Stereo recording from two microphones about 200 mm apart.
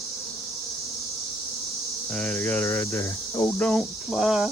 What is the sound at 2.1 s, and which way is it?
Speech, 10° left (ahead or behind).